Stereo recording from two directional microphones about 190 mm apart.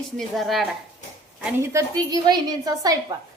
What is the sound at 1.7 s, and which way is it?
A woman's voice, 20° right (ahead or behind).